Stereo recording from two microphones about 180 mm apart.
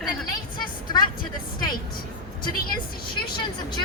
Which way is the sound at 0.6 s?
25° left (ahead or behind).